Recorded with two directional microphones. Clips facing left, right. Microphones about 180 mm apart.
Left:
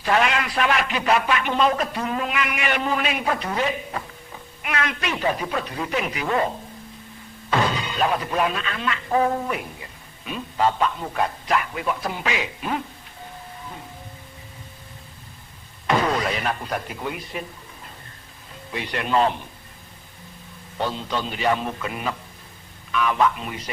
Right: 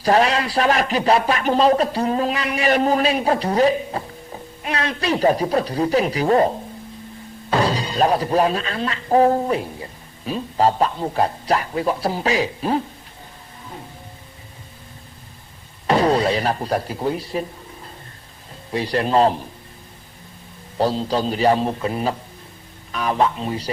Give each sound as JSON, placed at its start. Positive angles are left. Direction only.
{"t": 0.0, "sound": "a man's voice", "side_deg": -35}
{"t": 7.6, "sound": "a man's voice", "side_deg": -35}
{"t": 15.9, "sound": "speech", "side_deg": -35}
{"t": 18.7, "sound": "a man's voice", "side_deg": -35}
{"t": 20.7, "sound": "a man's voice", "side_deg": -35}